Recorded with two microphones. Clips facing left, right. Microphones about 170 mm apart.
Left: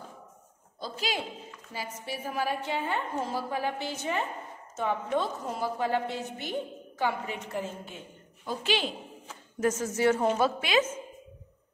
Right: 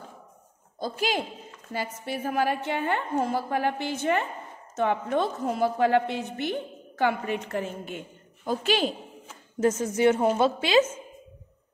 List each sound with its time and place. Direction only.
0.7 s a woman's voice: 50° right (ahead or behind)
8.5 s a woman's voice: 45° right (ahead or behind)
9.6 s speech: 20° right (ahead or behind)